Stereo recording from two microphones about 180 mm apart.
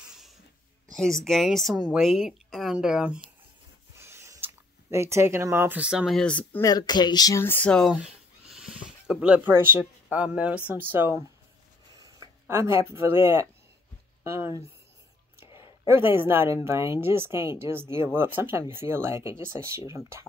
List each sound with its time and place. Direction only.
0.9 s a woman's voice: 5° left (ahead or behind)
3.9 s a sound: 15° right (ahead or behind)
4.9 s speech: 15° right (ahead or behind); by 6.6 s 5° left (ahead or behind)
6.6 s speech: 20° left (ahead or behind); by 11.2 s 10° right (ahead or behind)
11.9 s a sound: 20° right (ahead or behind)
14.2 s speech: 15° right (ahead or behind)